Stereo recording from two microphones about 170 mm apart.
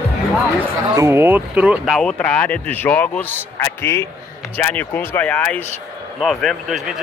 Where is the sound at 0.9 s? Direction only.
15° right (ahead or behind).